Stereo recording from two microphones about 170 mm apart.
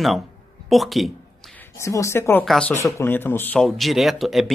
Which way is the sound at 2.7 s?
15° left (ahead or behind).